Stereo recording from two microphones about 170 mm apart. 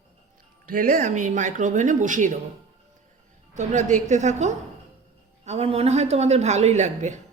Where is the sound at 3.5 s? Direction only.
45° right (ahead or behind).